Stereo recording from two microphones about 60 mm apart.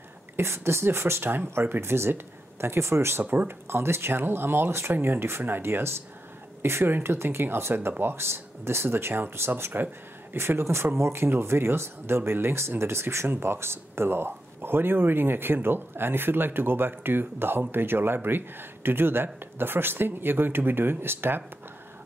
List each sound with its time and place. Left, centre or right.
0.4 s speech: right